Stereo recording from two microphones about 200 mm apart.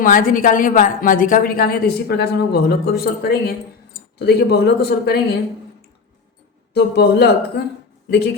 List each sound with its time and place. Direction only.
0.0 s a woman's voice: 45° left (ahead or behind)
6.7 s a woman's voice: 55° left (ahead or behind)